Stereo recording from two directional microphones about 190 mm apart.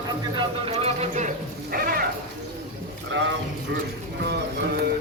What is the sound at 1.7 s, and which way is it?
Cat, 50° right (ahead or behind).